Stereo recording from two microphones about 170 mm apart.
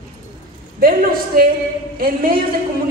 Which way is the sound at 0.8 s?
60° right (ahead or behind).